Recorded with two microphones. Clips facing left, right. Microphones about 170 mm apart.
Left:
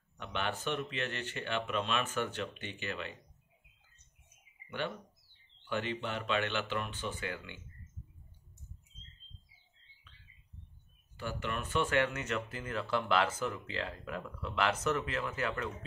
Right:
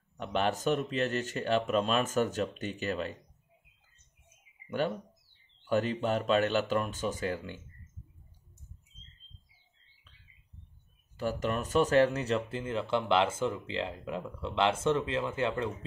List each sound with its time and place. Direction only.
0.2 s speech: 35° right (ahead or behind)
4.6 s speech: 40° right (ahead or behind)
11.1 s speech: 40° right (ahead or behind)